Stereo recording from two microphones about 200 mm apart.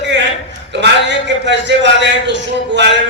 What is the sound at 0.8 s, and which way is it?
A man's voice, 60° right (ahead or behind).